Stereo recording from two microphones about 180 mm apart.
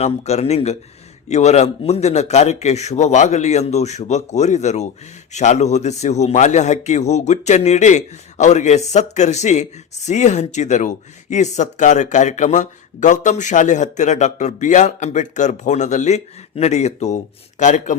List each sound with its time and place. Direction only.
0.0 s a man's voice: 35° left (ahead or behind)